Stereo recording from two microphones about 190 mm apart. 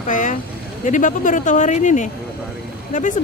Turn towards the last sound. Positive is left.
turn(degrees=45)  # may be behind; listen again after turning